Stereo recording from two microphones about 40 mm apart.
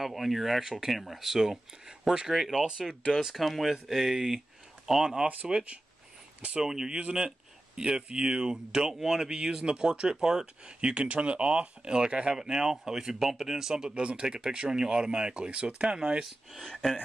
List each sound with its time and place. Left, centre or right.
0.0 s speech: centre
6.6 s speech: centre
7.0 s speech: right
10.4 s speech: right
16.5 s speech: centre